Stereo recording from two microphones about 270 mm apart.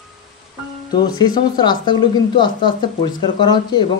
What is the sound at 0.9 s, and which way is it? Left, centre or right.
A woman's voice, centre.